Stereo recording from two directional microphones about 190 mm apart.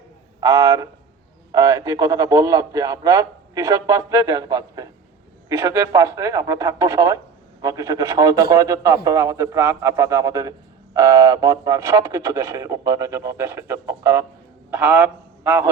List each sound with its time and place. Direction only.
0.3 s a man's voice: 20° right (ahead or behind)